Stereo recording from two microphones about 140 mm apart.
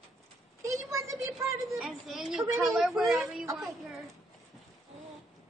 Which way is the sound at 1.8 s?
Centre (ahead or behind).